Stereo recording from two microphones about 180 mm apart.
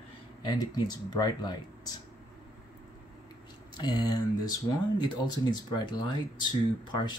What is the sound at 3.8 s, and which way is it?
Speech, 25° left (ahead or behind).